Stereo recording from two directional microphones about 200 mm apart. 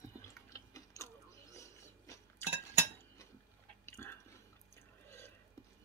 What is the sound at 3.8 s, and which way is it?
Chewing, 10° left (ahead or behind).